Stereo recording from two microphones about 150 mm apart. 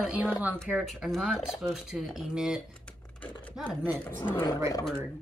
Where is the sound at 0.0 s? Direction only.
10° right (ahead or behind).